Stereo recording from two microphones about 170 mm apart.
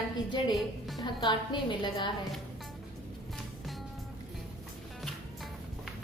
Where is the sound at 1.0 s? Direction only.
25° left (ahead or behind).